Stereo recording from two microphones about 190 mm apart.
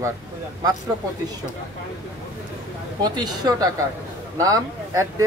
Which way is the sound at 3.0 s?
20° right (ahead or behind).